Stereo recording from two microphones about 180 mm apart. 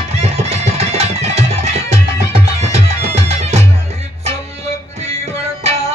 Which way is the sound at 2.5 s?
40° right (ahead or behind).